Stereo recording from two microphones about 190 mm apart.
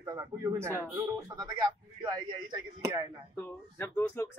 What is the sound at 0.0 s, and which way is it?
Speech, 15° right (ahead or behind).